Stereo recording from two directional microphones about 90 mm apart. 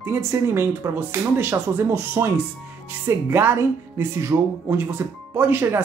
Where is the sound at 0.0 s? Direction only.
25° right (ahead or behind).